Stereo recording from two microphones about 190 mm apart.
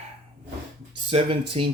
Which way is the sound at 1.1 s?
30° right (ahead or behind).